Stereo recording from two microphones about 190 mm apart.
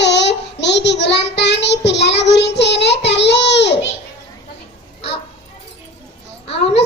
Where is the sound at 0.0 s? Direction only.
65° left (ahead or behind).